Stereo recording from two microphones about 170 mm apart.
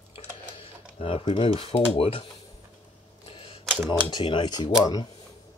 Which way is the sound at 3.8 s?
30° left (ahead or behind).